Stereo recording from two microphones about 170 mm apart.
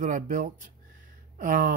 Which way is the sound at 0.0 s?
50° right (ahead or behind).